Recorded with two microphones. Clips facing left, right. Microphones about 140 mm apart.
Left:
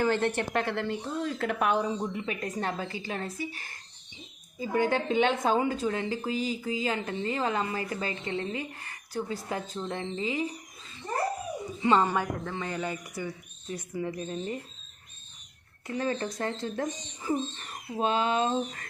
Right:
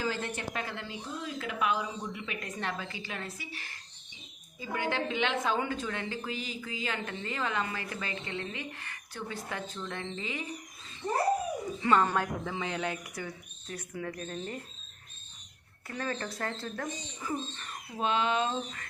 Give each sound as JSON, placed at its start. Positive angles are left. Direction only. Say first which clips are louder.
{"t": 0.0, "sound": "a woman's voice", "louder": "left 8 dB", "side_deg": 60}
{"t": 2.0, "sound": "a woman's voice", "louder": "left 6 dB", "side_deg": 35}
{"t": 11.8, "sound": "speech", "louder": "left 2 dB", "side_deg": 25}
{"t": 12.0, "sound": "speech", "louder": "left 2 dB", "side_deg": 5}
{"t": 16.0, "sound": "a woman's voice", "louder": "left 5 dB", "side_deg": 20}